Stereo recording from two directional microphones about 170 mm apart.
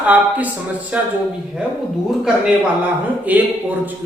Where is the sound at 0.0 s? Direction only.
10° right (ahead or behind).